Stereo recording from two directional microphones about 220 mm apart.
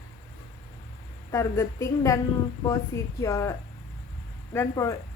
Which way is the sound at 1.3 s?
15° left (ahead or behind).